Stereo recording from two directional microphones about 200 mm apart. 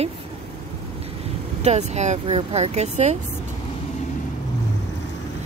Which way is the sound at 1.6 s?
35° right (ahead or behind).